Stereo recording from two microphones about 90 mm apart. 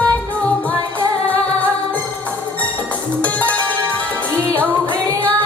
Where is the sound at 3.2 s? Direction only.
15° left (ahead or behind).